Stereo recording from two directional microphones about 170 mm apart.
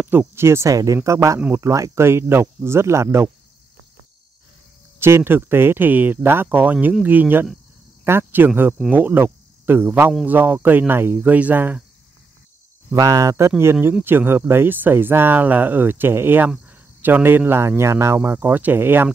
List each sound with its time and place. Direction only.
0.0 s speech: 15° right (ahead or behind)
4.9 s speech: 15° right (ahead or behind)
12.9 s speech: 20° right (ahead or behind)